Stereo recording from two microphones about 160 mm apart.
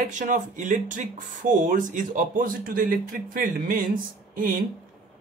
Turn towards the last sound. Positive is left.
turn(degrees=-60)  # may be behind; listen again after turning